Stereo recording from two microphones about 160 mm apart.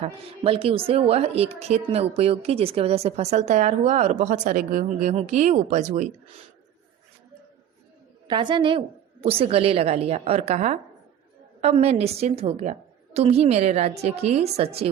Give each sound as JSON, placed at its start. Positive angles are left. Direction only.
{"t": 0.0, "sound": "a woman's voice", "side_deg": -35}
{"t": 8.3, "sound": "a woman's voice", "side_deg": -30}